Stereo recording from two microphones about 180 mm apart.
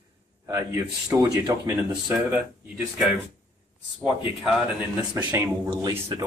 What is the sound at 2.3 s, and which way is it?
Speech, 5° right (ahead or behind).